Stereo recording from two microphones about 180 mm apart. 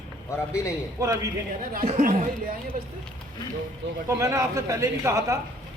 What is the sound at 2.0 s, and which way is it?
Speech, 45° right (ahead or behind).